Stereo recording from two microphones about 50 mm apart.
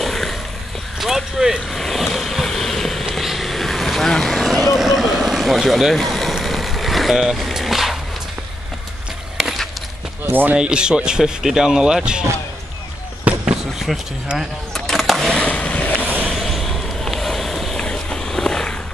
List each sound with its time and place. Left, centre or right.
0.0 s a sound: centre
0.9 s speech: centre
1.8 s vehicle: centre
4.6 s vehicle: centre
9.4 s a sound: centre
10.5 s speech: centre
13.3 s basketball bounce: right
13.9 s speech: centre
14.7 s skateboard: centre
15.4 s boat: left
16.3 s vehicle: centre
17.8 s a sound: centre